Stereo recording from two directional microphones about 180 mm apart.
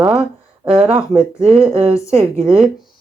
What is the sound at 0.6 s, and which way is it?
Speech, 25° right (ahead or behind).